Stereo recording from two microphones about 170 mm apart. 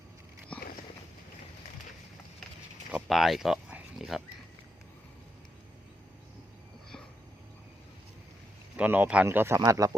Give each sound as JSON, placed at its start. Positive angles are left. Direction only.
{"t": 0.5, "sound": "biting", "side_deg": 10}
{"t": 2.9, "sound": "speech", "side_deg": 0}
{"t": 8.7, "sound": "speech", "side_deg": -10}